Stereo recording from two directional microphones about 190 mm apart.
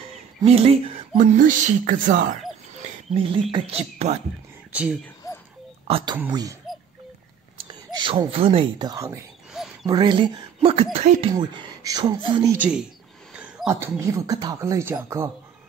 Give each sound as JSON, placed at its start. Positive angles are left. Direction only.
{"t": 0.5, "sound": "speech", "side_deg": -30}
{"t": 3.1, "sound": "speech", "side_deg": -30}
{"t": 4.7, "sound": "speech", "side_deg": -5}
{"t": 5.9, "sound": "speech", "side_deg": -30}
{"t": 6.3, "sound": "speech", "side_deg": -20}
{"t": 11.3, "sound": "speech", "side_deg": -20}
{"t": 12.5, "sound": "speech", "side_deg": -5}